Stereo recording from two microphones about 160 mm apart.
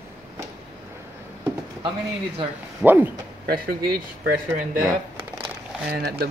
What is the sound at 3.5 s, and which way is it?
Speech, 65° right (ahead or behind).